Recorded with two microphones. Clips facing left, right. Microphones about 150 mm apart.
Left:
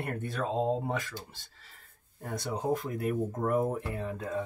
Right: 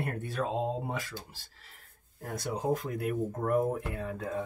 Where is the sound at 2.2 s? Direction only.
Centre (ahead or behind).